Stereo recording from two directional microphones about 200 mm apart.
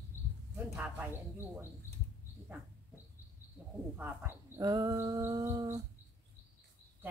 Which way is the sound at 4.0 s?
10° right (ahead or behind).